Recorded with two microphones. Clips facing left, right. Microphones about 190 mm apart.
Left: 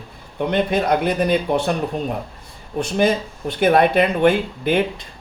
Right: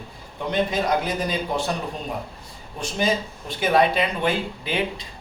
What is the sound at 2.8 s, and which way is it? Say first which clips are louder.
Speech: left 6 dB; 55° left (ahead or behind).